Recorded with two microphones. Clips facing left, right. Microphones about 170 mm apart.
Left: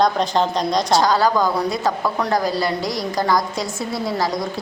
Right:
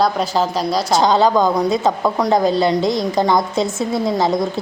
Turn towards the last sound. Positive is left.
turn(degrees=-25)  # may be behind; listen again after turning